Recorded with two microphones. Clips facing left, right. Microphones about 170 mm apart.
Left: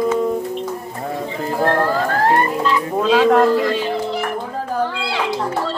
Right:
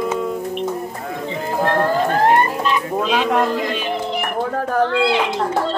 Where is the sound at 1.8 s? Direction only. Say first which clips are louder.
Right 1 dB; 20° right (ahead or behind).